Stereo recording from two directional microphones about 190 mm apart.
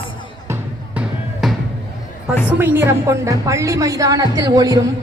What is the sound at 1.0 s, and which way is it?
Music, centre (ahead or behind).